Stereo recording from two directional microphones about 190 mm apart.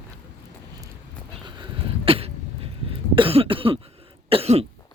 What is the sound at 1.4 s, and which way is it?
Cough, 25° right (ahead or behind).